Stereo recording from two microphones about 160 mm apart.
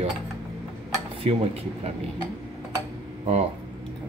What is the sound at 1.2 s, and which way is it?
Speech, 35° right (ahead or behind).